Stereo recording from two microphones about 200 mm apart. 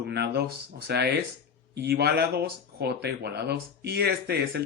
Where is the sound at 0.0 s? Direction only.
55° right (ahead or behind).